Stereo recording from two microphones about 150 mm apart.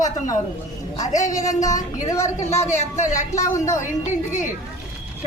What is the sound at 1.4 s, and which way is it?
Speech, 20° left (ahead or behind).